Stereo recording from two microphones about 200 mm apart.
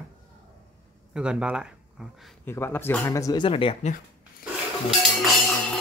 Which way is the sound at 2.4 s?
10° left (ahead or behind).